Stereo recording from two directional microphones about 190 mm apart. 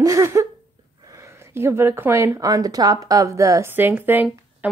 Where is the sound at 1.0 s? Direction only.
15° right (ahead or behind).